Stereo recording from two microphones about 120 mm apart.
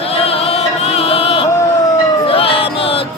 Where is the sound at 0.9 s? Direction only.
55° left (ahead or behind).